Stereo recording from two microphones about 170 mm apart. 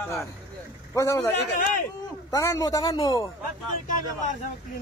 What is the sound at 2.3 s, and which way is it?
Speech, 20° left (ahead or behind).